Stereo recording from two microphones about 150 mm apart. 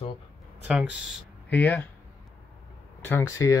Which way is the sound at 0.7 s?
5° right (ahead or behind).